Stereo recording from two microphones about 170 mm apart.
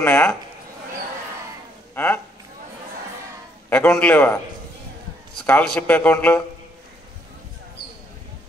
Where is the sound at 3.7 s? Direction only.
10° left (ahead or behind).